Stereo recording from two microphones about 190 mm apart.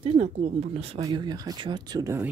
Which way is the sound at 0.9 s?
20° right (ahead or behind).